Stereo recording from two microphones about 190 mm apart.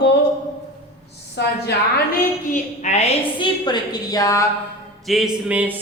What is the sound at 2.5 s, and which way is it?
Speech, 40° left (ahead or behind).